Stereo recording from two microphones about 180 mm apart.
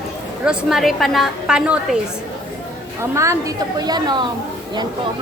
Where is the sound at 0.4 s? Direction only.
Centre (ahead or behind).